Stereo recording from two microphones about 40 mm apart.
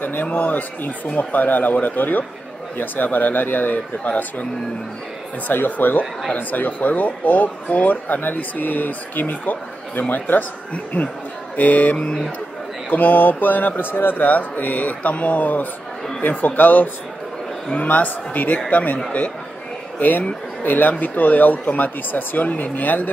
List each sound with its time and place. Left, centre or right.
0.0 s speech: left
5.5 s speech: left
14.2 s speech: left
20.0 s speech: left